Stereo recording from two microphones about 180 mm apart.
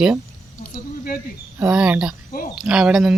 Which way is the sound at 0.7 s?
55° left (ahead or behind).